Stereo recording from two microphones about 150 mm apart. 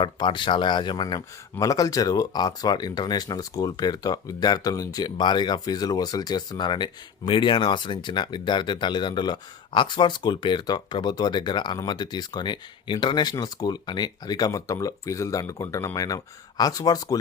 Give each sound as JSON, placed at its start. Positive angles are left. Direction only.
{"t": 0.0, "sound": "speech", "side_deg": 30}